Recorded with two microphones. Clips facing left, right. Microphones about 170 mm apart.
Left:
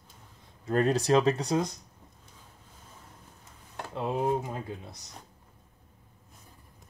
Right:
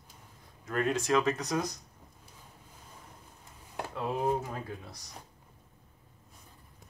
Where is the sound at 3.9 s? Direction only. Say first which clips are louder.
Left 2 dB; 20° left (ahead or behind).